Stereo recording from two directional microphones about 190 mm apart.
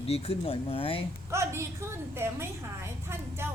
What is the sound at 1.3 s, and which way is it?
A woman's voice, 15° right (ahead or behind).